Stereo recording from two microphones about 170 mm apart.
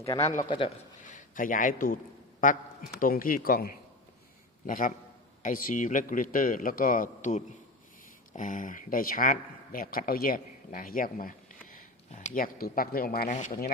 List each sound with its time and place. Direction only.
0.2 s a man's voice: 40° left (ahead or behind)
1.0 s a man's voice: 50° left (ahead or behind)